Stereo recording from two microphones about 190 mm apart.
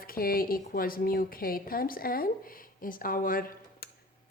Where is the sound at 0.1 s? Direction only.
50° left (ahead or behind).